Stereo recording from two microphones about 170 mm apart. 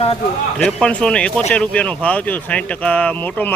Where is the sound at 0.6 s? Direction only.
5° left (ahead or behind).